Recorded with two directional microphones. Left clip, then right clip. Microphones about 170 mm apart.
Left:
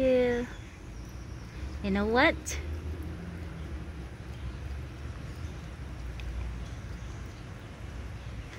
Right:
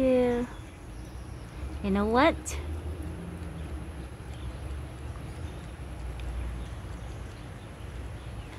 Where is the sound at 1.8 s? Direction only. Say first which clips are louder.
Right 1 dB; 10° right (ahead or behind).